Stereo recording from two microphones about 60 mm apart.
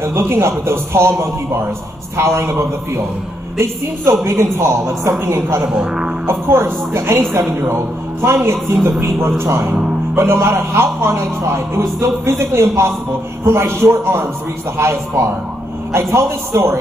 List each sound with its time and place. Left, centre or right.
0.0 s a man's voice: right
3.5 s a woman's voice: right
5.6 s speech: centre
6.2 s a man's voice: right